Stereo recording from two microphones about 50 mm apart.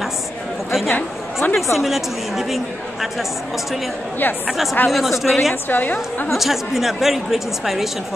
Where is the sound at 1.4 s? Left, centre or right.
Left.